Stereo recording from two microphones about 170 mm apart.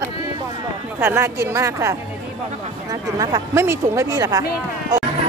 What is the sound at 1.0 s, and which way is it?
Speech, 15° right (ahead or behind).